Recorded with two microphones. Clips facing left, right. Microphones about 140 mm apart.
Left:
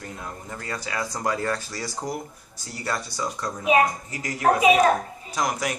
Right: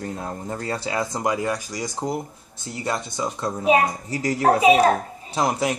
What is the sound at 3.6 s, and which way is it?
A child's voice, 35° right (ahead or behind).